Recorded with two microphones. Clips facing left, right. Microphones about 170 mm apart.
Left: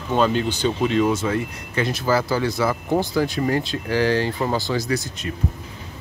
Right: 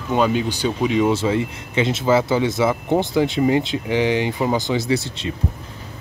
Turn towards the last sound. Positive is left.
turn(degrees=-30)  # may be behind; listen again after turning